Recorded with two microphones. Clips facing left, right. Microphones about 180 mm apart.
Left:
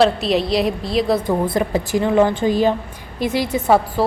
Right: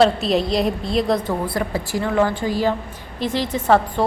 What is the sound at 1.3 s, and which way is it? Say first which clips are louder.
A woman's voice: left 4 dB; 20° left (ahead or behind).